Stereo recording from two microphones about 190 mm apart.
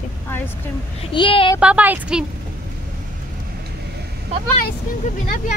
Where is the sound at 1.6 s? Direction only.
5° right (ahead or behind).